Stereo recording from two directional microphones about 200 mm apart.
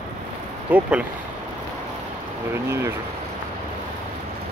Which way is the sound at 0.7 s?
5° right (ahead or behind).